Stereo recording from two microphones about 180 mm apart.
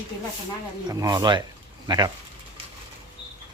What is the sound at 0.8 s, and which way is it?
Speech, 20° right (ahead or behind).